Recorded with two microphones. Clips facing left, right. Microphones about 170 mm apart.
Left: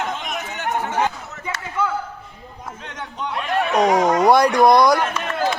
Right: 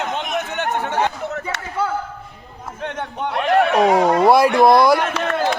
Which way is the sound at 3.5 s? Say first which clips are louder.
Right 6 dB; 65° right (ahead or behind).